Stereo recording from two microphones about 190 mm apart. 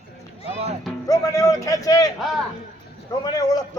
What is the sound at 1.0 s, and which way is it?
A man's voice, 20° left (ahead or behind).